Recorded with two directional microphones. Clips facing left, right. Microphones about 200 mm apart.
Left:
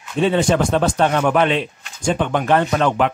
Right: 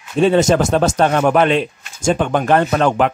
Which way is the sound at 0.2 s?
45° right (ahead or behind).